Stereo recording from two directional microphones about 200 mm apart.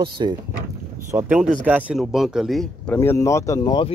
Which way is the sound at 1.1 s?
5° right (ahead or behind).